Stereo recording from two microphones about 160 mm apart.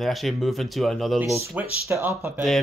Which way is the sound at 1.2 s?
20° right (ahead or behind).